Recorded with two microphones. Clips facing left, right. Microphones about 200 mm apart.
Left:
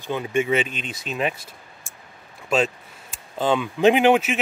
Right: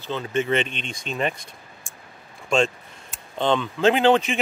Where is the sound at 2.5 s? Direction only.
5° left (ahead or behind).